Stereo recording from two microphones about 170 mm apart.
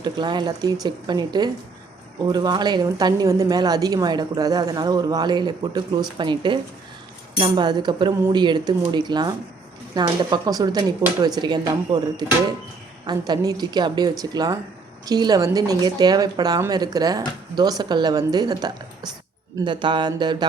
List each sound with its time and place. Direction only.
0.0 s a woman's voice: 25° right (ahead or behind)